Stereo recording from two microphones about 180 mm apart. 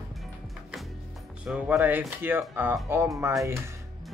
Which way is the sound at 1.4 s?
5° right (ahead or behind).